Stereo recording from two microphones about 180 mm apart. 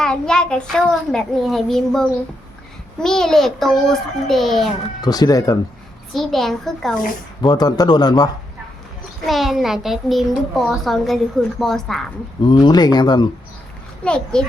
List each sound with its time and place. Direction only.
0.0 s a child's voice: 5° left (ahead or behind)
5.0 s a man's voice: 20° left (ahead or behind)
6.1 s a child's voice: centre (ahead or behind)
7.4 s a man's voice: 20° left (ahead or behind)
9.2 s a child's voice: centre (ahead or behind)
12.4 s a man's voice: 25° left (ahead or behind)
14.0 s a child's voice: 5° left (ahead or behind)